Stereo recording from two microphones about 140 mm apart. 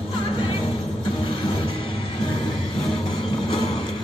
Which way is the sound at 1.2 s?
40° left (ahead or behind).